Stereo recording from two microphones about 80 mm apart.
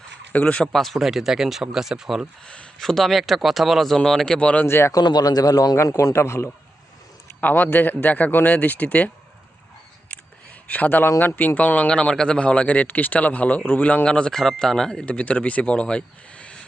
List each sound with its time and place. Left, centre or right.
0.3 s speech: centre
0.7 s speech: centre
2.4 s speech: centre
4.6 s a man's voice: left
5.0 s a man's voice: left
5.7 s a man's voice: left; by 9.0 s centre
10.7 s a man's voice: left